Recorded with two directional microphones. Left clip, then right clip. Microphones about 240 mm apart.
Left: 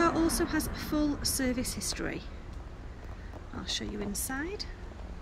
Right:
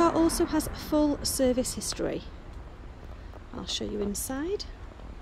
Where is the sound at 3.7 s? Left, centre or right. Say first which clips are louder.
Right 5 dB; centre.